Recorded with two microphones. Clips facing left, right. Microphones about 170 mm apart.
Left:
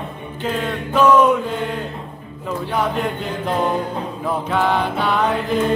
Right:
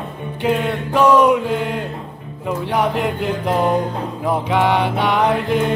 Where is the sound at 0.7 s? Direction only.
10° right (ahead or behind).